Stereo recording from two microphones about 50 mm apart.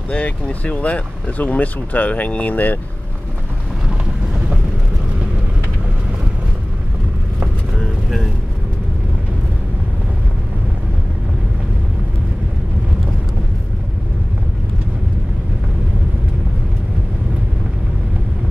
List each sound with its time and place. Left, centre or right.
0.1 s speech: left